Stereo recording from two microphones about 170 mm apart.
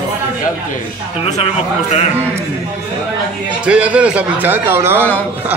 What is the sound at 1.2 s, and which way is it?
Speech, 40° left (ahead or behind).